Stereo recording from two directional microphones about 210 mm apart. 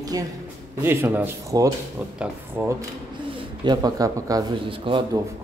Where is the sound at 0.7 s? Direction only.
10° right (ahead or behind).